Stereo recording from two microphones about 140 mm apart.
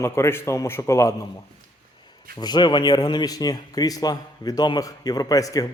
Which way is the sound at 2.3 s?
30° left (ahead or behind).